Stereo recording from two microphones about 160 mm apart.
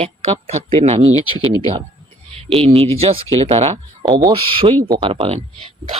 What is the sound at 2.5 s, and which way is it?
Speech, 35° right (ahead or behind).